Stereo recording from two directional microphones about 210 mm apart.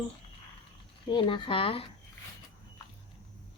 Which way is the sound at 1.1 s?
20° left (ahead or behind).